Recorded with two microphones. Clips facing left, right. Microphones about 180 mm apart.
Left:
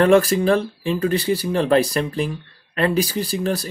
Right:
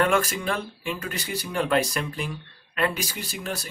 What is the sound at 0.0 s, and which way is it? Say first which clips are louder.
Speech: left 9 dB; 35° left (ahead or behind).